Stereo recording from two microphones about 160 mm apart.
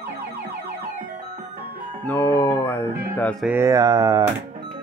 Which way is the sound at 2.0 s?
10° left (ahead or behind).